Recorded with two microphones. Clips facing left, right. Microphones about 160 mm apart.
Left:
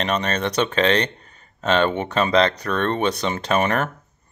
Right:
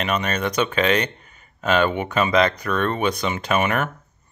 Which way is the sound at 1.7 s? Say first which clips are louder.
Even; 30° left (ahead or behind).